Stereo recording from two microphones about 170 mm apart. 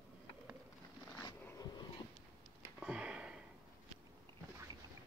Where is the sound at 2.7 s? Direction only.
5° right (ahead or behind).